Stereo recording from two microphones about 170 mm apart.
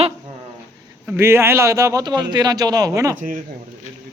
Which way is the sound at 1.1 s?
15° right (ahead or behind).